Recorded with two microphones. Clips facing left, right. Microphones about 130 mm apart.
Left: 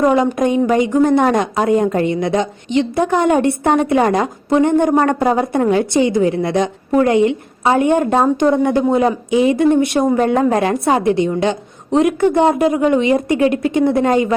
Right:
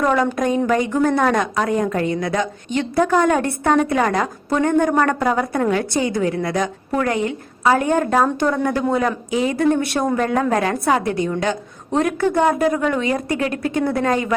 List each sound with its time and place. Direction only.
0.0 s speech: 20° left (ahead or behind)